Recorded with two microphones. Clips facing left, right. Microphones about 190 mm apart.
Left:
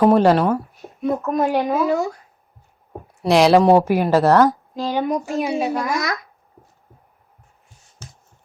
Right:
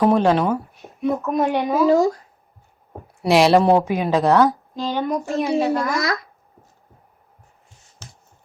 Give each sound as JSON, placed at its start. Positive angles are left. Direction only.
{"t": 0.0, "sound": "a woman's voice", "side_deg": 5}
{"t": 1.9, "sound": "speech", "side_deg": -35}
{"t": 3.2, "sound": "a woman's voice", "side_deg": 0}